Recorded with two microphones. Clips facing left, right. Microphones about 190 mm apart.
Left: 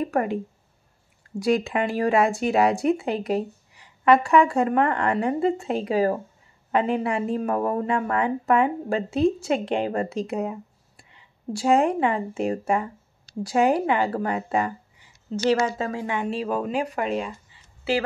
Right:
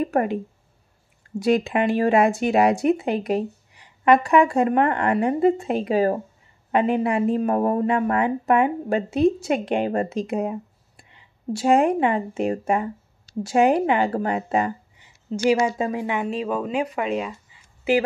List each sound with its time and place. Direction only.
0.1 s speech: 20° right (ahead or behind)
1.4 s speech: 20° right (ahead or behind)
11.5 s speech: 20° right (ahead or behind)
16.4 s speech: 5° left (ahead or behind)
16.7 s speech: 35° left (ahead or behind)